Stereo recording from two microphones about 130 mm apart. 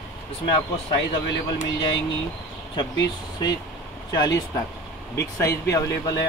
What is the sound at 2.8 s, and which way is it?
Speech, 30° left (ahead or behind).